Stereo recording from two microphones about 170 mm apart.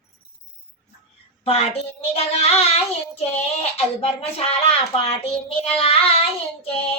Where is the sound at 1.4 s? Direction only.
35° left (ahead or behind).